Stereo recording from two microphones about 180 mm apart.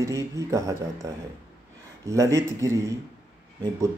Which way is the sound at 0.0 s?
15° right (ahead or behind).